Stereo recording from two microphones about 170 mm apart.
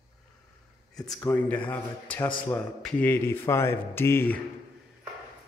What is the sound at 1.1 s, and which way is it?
Speech, 15° left (ahead or behind).